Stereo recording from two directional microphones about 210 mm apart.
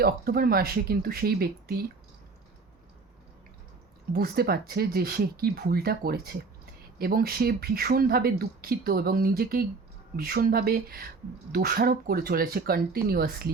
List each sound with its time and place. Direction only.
0.0 s speech: 45° right (ahead or behind)
4.1 s speech: 45° right (ahead or behind)